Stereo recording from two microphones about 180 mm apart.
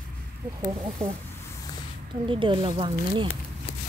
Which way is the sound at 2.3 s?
30° right (ahead or behind).